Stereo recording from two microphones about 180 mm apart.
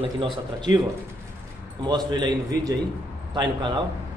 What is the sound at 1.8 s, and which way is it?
A man's voice, 25° right (ahead or behind).